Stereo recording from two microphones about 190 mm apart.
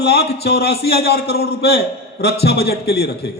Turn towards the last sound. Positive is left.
turn(degrees=60)  # may be behind; listen again after turning